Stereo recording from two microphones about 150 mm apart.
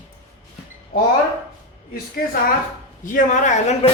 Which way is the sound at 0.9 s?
75° left (ahead or behind).